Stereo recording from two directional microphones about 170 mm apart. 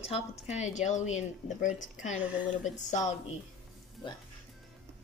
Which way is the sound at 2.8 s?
45° left (ahead or behind).